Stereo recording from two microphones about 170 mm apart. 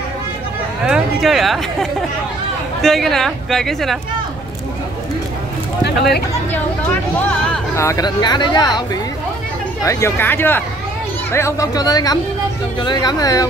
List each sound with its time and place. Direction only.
0.8 s speech: 5° right (ahead or behind)
6.5 s speech: 10° left (ahead or behind)
9.8 s speech: 15° left (ahead or behind)